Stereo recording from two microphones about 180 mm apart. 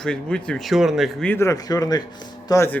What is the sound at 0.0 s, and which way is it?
Speech, 5° left (ahead or behind).